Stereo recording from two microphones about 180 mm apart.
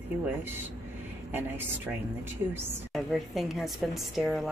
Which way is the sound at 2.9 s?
Centre (ahead or behind).